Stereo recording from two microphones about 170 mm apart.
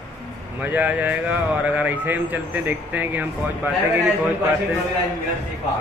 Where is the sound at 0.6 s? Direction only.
10° right (ahead or behind).